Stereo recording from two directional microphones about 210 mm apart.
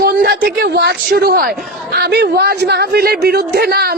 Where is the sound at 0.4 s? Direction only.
50° right (ahead or behind).